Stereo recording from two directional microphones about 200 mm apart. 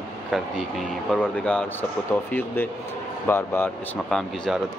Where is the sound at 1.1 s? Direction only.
5° left (ahead or behind).